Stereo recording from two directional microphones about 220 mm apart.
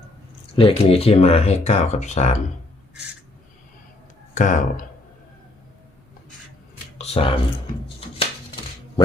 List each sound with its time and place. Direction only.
0.5 s speech: 25° left (ahead or behind)
4.4 s speech: 35° left (ahead or behind)
7.0 s a sound: 25° left (ahead or behind)